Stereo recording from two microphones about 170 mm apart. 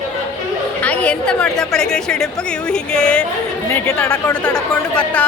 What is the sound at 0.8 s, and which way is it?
A woman's voice, 5° left (ahead or behind).